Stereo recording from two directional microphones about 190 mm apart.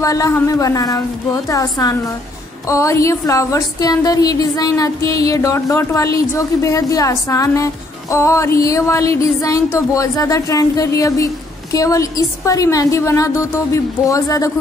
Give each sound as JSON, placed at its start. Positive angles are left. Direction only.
{"t": 0.0, "sound": "a woman's voice", "side_deg": 15}